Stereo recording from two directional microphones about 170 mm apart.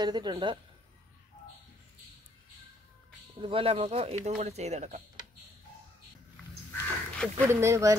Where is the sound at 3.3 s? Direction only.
35° right (ahead or behind).